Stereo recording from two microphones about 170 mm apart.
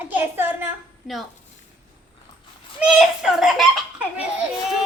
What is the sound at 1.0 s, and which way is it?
Speech, 5° right (ahead or behind).